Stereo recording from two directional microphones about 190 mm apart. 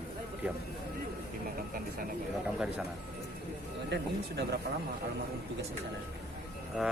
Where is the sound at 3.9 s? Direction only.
65° right (ahead or behind).